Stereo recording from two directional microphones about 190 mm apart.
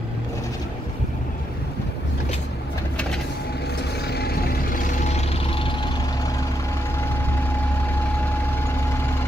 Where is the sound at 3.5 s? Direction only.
60° left (ahead or behind).